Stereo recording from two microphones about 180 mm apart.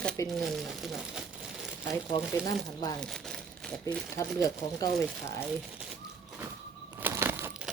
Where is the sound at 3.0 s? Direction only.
5° left (ahead or behind).